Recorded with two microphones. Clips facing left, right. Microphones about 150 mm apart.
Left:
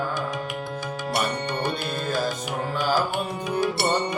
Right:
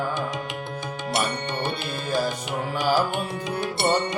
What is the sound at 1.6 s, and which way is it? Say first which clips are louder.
Music: left 1 dB; 20° right (ahead or behind).